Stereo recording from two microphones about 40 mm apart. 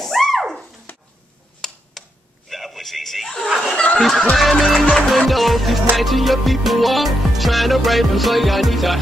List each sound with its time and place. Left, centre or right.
0.0 s music: centre
0.9 s a sound: left
1.6 s tick-tock: centre
2.5 s a sound: centre
3.7 s snicker: left
4.0 s music: centre